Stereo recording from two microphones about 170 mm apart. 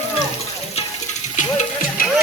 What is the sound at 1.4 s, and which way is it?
Music, 45° left (ahead or behind).